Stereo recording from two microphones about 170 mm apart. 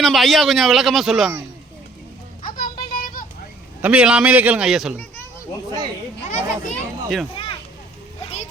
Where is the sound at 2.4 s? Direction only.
55° left (ahead or behind).